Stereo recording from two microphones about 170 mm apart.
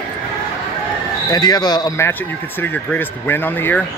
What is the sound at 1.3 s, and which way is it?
A man's voice, 25° left (ahead or behind).